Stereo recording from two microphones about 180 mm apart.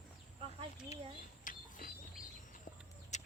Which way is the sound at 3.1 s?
40° left (ahead or behind).